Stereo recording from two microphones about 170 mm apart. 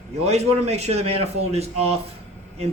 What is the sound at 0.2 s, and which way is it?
A man's voice, 40° right (ahead or behind).